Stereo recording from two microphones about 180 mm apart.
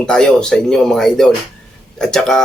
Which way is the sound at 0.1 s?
5° left (ahead or behind).